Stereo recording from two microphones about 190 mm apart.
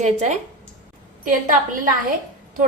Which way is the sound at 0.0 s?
40° right (ahead or behind).